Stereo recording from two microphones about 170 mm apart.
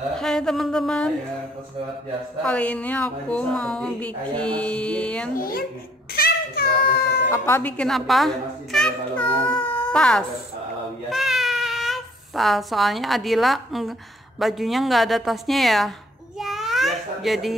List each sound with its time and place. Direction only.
0.1 s a woman's voice: 5° left (ahead or behind)
2.4 s a woman's voice: 5° left (ahead or behind)
5.3 s a child's voice: 60° left (ahead or behind)
6.1 s a sound: 65° left (ahead or behind)
7.4 s a woman's voice: 10° left (ahead or behind)
8.7 s child singing: 5° left (ahead or behind)
9.6 s a sound: 10° left (ahead or behind)
11.1 s a woman's voice: centre (ahead or behind)
16.3 s babbling: centre (ahead or behind)